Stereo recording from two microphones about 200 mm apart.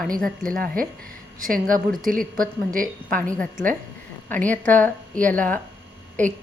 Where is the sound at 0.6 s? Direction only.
45° right (ahead or behind).